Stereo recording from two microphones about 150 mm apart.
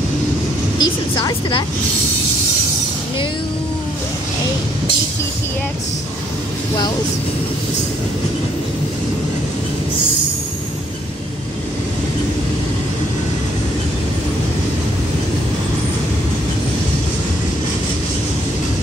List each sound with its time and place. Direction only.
0.7 s speech: 30° left (ahead or behind)